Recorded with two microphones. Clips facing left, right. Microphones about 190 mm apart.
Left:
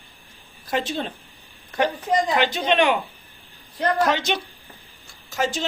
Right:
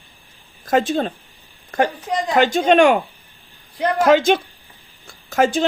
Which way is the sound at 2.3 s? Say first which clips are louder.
Right 6 dB; 45° right (ahead or behind).